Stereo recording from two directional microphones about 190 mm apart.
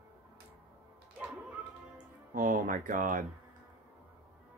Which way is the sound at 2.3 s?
45° right (ahead or behind).